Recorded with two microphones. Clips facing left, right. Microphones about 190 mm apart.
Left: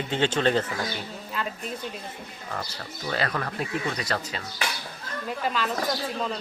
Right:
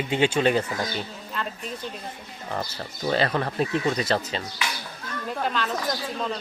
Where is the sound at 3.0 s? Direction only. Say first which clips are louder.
Right 5 dB; 25° right (ahead or behind).